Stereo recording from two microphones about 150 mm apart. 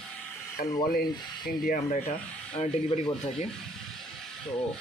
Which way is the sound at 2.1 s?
45° left (ahead or behind).